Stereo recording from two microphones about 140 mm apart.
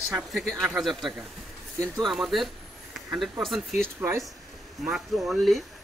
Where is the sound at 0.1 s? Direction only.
5° right (ahead or behind).